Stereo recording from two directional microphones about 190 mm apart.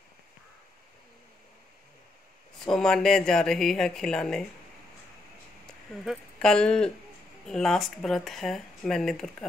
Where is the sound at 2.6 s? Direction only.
5° left (ahead or behind).